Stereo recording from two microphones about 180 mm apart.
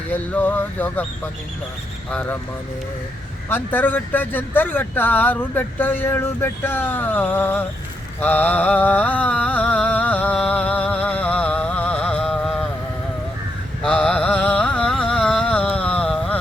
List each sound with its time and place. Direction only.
0.1 s speech: 10° left (ahead or behind)
2.0 s speech: 10° left (ahead or behind)
3.5 s speech: 10° left (ahead or behind)
8.2 s mantra: 10° left (ahead or behind)
13.8 s music: 5° left (ahead or behind)